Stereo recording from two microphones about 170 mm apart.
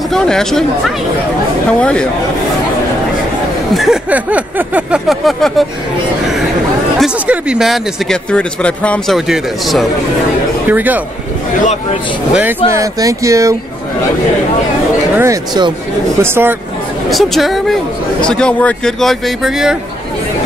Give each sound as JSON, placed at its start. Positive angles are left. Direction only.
{"t": 0.1, "sound": "speech", "side_deg": 5}
{"t": 3.7, "sound": "speech", "side_deg": 0}
{"t": 7.0, "sound": "speech", "side_deg": -5}
{"t": 12.7, "sound": "speech", "side_deg": -20}
{"t": 15.1, "sound": "speech", "side_deg": -20}
{"t": 17.1, "sound": "speech", "side_deg": 0}